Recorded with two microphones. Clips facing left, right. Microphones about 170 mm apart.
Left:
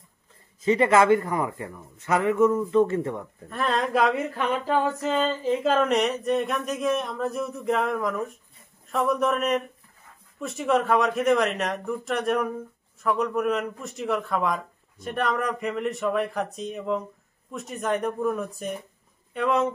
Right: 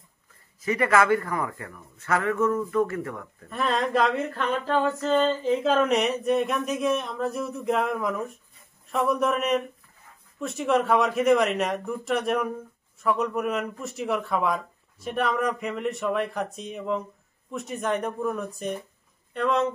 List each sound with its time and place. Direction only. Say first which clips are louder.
0.6 s a man's voice: left 3 dB; 25° left (ahead or behind)
3.4 s a sound: even; centre (ahead or behind)
19.3 s speech: left 1 dB; 5° left (ahead or behind)